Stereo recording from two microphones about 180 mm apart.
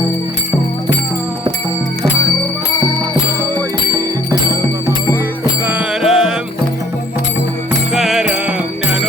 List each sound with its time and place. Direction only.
5.6 s music: 5° right (ahead or behind)
7.9 s music: centre (ahead or behind)